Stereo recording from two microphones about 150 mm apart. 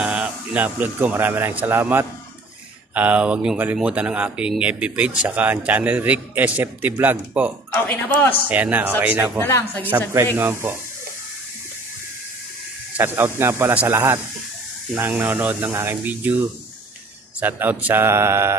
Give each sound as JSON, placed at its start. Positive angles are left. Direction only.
{"t": 0.0, "sound": "a man's voice", "side_deg": -5}
{"t": 9.4, "sound": "speech", "side_deg": 15}
{"t": 9.8, "sound": "speech", "side_deg": -15}
{"t": 12.9, "sound": "speech", "side_deg": -15}
{"t": 17.4, "sound": "speech", "side_deg": -10}